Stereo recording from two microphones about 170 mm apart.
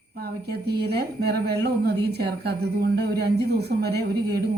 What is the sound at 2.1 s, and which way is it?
Speech, 70° right (ahead or behind).